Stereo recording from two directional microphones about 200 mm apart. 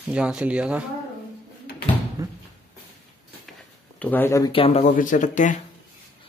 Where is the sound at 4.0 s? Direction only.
10° left (ahead or behind).